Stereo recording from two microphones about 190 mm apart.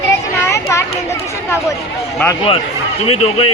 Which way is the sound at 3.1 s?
30° left (ahead or behind).